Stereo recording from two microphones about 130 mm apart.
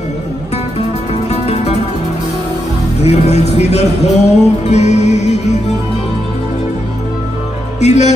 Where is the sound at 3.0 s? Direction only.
55° left (ahead or behind).